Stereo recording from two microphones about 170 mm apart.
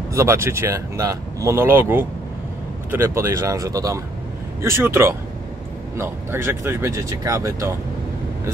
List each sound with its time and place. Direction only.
0.1 s speech: 15° right (ahead or behind)